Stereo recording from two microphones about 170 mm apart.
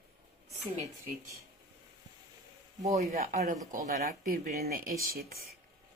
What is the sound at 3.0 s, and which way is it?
Speech, 40° right (ahead or behind).